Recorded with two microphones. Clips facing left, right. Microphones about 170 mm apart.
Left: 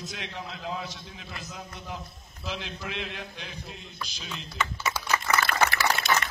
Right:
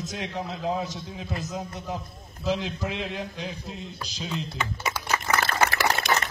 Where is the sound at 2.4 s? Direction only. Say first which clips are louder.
Right 8 dB; 40° right (ahead or behind).